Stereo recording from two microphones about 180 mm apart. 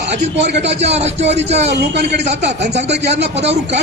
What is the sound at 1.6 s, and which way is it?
Speech, 70° right (ahead or behind).